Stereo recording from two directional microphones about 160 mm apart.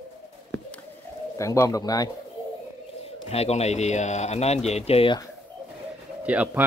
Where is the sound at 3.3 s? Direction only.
40° left (ahead or behind).